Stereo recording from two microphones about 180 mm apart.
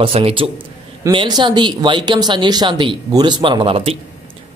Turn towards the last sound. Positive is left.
turn(degrees=-30)  # may be behind; listen again after turning